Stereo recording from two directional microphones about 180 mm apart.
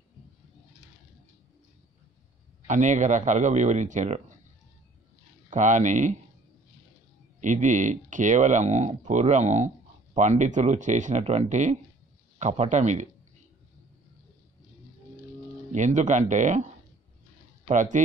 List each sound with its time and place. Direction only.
2.6 s a man's voice: 40° right (ahead or behind)
5.5 s a man's voice: 40° right (ahead or behind)
7.3 s speech: 45° right (ahead or behind)
15.7 s speech: 40° right (ahead or behind)
17.6 s a man's voice: 45° right (ahead or behind)